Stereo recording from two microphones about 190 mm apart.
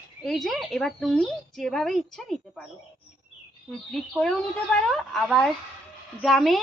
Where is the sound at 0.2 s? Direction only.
Centre (ahead or behind).